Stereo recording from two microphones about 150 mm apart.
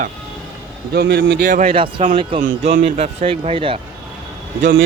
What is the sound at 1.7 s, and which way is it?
Speech, 35° right (ahead or behind).